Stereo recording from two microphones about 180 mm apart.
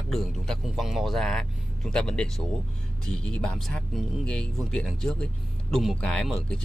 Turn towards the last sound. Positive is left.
turn(degrees=0)  # may be behind; listen again after turning